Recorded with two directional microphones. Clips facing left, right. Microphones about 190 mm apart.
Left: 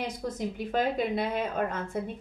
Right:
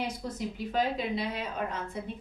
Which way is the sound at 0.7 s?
50° left (ahead or behind).